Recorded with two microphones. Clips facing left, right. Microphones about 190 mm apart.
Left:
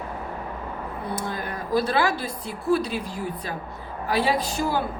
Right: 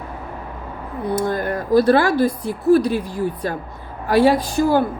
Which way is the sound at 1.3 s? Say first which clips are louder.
Right 7 dB; 50° right (ahead or behind).